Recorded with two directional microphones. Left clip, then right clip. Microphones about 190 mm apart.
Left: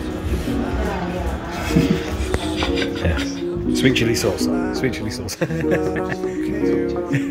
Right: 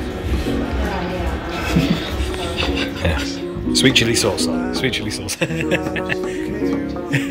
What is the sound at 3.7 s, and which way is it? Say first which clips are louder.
Speech: right 4 dB; 15° left (ahead or behind).